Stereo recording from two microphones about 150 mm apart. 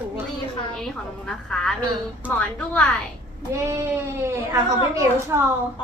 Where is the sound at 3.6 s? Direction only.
20° right (ahead or behind).